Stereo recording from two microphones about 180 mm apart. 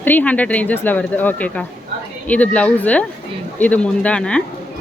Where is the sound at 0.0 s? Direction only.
10° left (ahead or behind).